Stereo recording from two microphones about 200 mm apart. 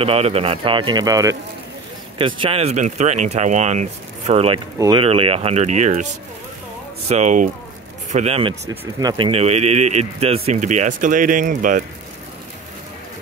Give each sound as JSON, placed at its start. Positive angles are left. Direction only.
{"t": 0.0, "sound": "a man's voice", "side_deg": -30}
{"t": 4.7, "sound": "speech", "side_deg": -15}
{"t": 5.0, "sound": "speech", "side_deg": -30}
{"t": 7.1, "sound": "speech", "side_deg": -35}